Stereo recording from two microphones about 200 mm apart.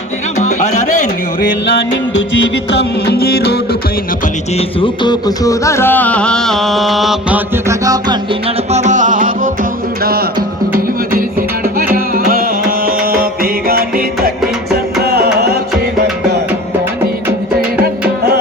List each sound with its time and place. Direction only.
2.6 s music: 55° left (ahead or behind)
4.5 s music: 25° left (ahead or behind); by 15.5 s 55° right (ahead or behind)
15.7 s music: centre (ahead or behind)